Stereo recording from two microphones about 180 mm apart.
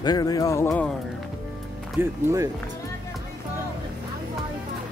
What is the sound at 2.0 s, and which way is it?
Speech, 15° right (ahead or behind).